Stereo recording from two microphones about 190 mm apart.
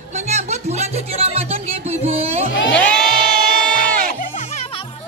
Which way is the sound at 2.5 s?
70° left (ahead or behind).